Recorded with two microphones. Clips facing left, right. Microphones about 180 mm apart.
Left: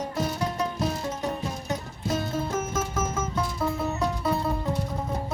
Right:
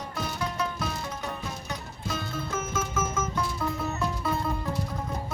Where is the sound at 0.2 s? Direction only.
40° left (ahead or behind).